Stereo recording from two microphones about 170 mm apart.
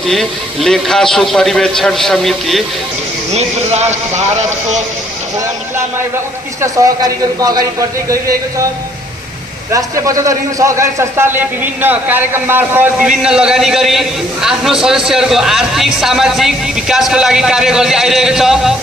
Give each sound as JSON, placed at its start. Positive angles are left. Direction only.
{"t": 0.1, "sound": "a man's voice", "side_deg": 0}
{"t": 3.3, "sound": "speech", "side_deg": -40}
{"t": 6.6, "sound": "a man's voice", "side_deg": -20}
{"t": 9.7, "sound": "a man's voice", "side_deg": -20}